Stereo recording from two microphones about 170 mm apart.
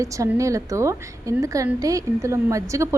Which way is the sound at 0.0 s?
20° right (ahead or behind).